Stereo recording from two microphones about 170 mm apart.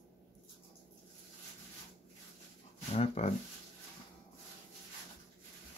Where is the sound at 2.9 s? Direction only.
40° left (ahead or behind).